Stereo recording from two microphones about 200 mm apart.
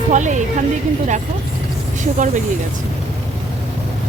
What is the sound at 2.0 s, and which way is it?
Speech, 40° right (ahead or behind).